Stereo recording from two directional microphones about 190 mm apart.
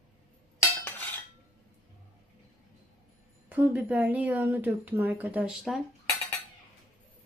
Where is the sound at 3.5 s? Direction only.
10° right (ahead or behind).